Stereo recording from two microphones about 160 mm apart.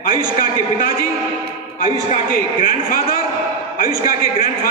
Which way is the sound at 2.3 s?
60° left (ahead or behind).